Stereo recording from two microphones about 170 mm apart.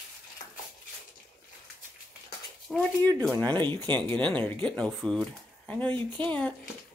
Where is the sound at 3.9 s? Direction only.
10° left (ahead or behind).